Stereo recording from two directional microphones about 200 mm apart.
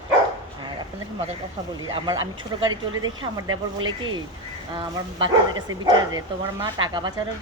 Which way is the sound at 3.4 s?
90° right.